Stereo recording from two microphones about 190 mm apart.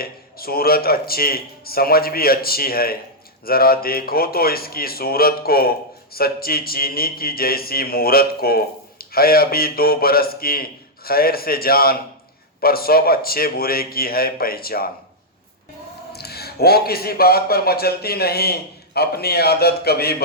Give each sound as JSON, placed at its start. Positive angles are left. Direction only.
{"t": 0.0, "sound": "a man's voice", "side_deg": 50}
{"t": 16.1, "sound": "a man's voice", "side_deg": 55}